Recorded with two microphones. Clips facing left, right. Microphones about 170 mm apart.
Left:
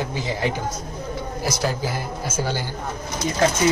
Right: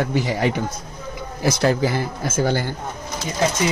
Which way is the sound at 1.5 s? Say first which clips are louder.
Right 7 dB; 65° right (ahead or behind).